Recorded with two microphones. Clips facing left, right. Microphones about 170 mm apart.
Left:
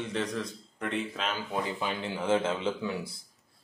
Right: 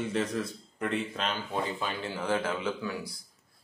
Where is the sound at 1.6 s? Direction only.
15° left (ahead or behind).